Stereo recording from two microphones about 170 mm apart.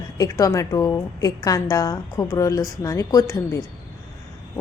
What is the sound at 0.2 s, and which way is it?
A woman's voice, 20° left (ahead or behind).